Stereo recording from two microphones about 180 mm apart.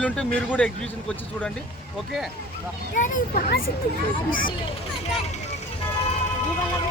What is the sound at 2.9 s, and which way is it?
Speech, 45° left (ahead or behind).